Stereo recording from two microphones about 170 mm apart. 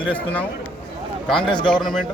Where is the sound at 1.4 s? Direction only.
30° left (ahead or behind).